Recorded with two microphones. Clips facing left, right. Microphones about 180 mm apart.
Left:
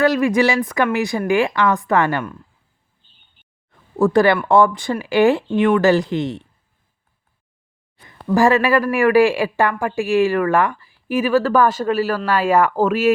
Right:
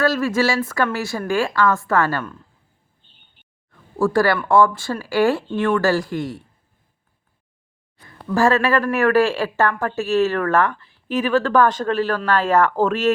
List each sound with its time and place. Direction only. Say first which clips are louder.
0.0 s speech: left 3 dB; 15° left (ahead or behind)
3.9 s speech: left 3 dB; 20° left (ahead or behind)
8.0 s speech: left 3 dB; 15° left (ahead or behind)